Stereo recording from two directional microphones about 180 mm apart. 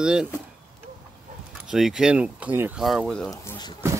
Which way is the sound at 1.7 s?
Centre (ahead or behind).